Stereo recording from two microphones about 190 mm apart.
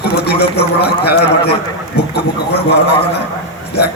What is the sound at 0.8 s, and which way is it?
Speech, 60° left (ahead or behind).